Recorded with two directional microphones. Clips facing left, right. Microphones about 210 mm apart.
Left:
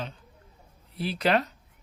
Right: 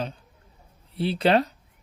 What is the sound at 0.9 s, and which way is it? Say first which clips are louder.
Speech: right 4 dB; 30° right (ahead or behind).